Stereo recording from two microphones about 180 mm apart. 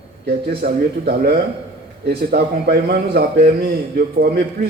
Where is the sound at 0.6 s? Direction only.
60° right (ahead or behind).